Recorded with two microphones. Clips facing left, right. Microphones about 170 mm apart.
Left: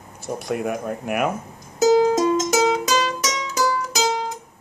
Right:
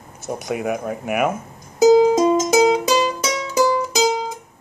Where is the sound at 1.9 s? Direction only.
20° right (ahead or behind).